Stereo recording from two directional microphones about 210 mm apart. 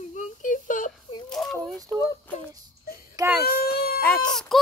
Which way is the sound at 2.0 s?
15° left (ahead or behind).